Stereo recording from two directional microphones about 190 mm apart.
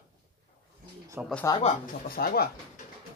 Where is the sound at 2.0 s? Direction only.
55° left (ahead or behind).